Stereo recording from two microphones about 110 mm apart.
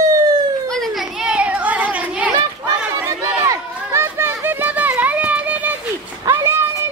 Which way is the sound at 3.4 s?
25° right (ahead or behind).